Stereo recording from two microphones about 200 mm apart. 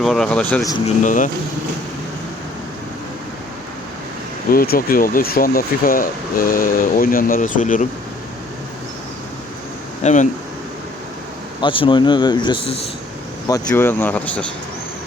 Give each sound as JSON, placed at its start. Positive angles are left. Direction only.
{"t": 0.0, "sound": "speech", "side_deg": 0}
{"t": 0.9, "sound": "speech", "side_deg": 40}
{"t": 4.5, "sound": "speech", "side_deg": 50}
{"t": 10.0, "sound": "speech", "side_deg": 35}
{"t": 11.6, "sound": "speech", "side_deg": 25}
{"t": 13.7, "sound": "speech", "side_deg": 10}